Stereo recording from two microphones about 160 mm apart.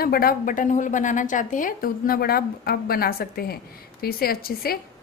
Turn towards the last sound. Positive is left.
turn(degrees=70)  # may be behind; listen again after turning